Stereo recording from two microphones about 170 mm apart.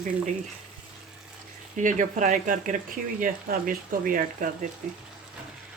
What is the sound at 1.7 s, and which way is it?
Speech, 50° right (ahead or behind).